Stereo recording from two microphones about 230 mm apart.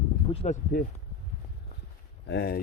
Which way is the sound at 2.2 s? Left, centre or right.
Left.